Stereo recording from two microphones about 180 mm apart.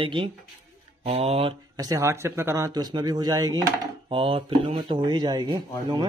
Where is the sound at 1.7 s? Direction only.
20° right (ahead or behind).